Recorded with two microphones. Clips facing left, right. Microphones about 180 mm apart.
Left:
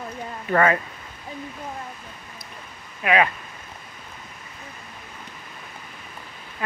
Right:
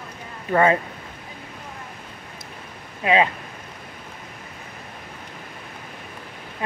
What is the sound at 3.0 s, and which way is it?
Speech, 25° right (ahead or behind).